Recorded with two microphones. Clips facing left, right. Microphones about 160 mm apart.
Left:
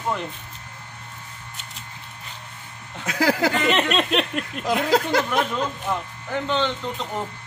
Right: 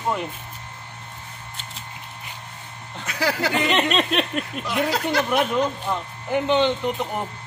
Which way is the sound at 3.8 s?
Centre (ahead or behind).